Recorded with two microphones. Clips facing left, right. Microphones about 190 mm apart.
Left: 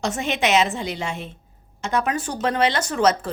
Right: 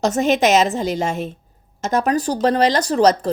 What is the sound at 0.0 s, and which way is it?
Speech, 40° right (ahead or behind).